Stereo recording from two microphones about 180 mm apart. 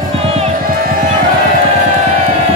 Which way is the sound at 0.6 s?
50° right (ahead or behind).